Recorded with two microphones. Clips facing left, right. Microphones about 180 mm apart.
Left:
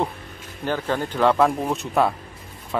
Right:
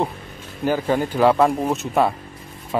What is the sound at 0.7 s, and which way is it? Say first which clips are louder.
Speech: right 4 dB; 10° right (ahead or behind).